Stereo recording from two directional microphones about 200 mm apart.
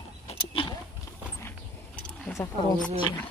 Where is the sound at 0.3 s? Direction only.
25° left (ahead or behind).